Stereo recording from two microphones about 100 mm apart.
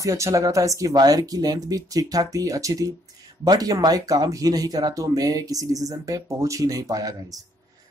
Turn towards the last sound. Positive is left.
turn(degrees=-35)  # may be behind; listen again after turning